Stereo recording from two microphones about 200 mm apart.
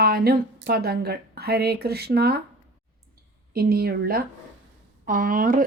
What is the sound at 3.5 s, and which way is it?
Speech, 50° right (ahead or behind).